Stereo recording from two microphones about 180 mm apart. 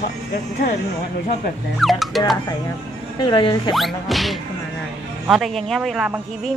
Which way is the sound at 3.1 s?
25° left (ahead or behind).